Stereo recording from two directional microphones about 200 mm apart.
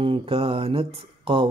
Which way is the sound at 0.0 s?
25° right (ahead or behind).